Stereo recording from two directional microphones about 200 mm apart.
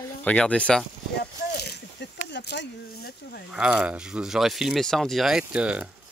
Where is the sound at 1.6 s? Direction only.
55° left (ahead or behind).